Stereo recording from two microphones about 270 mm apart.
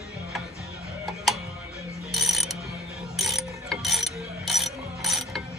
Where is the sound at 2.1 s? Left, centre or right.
Centre.